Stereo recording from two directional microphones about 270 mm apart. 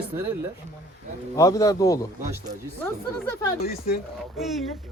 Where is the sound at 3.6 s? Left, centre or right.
Left.